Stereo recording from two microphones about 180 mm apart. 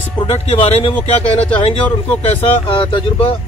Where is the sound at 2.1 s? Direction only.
10° left (ahead or behind).